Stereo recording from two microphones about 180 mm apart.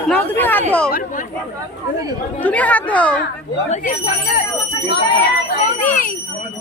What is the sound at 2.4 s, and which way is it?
Speech, 10° left (ahead or behind).